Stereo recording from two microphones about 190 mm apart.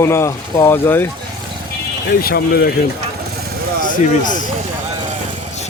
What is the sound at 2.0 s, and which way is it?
Speech, 55° left (ahead or behind).